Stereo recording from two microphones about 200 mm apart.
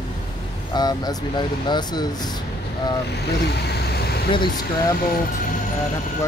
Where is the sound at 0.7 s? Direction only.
20° left (ahead or behind).